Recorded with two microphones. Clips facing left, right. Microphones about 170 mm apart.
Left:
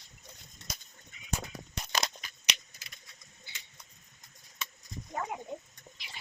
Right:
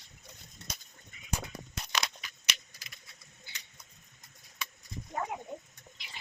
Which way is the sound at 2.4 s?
20° left (ahead or behind).